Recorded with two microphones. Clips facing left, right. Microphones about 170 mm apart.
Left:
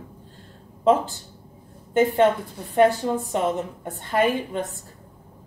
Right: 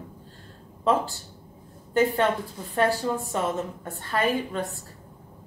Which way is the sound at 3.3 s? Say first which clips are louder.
Left 3 dB; 20° left (ahead or behind).